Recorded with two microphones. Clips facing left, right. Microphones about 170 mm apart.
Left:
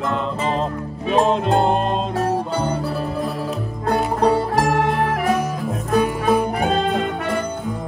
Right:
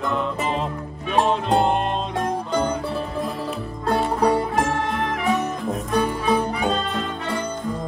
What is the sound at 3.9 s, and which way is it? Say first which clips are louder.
Music: left 2 dB; centre (ahead or behind).